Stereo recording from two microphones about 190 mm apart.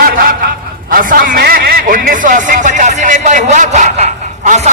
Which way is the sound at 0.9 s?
45° right (ahead or behind).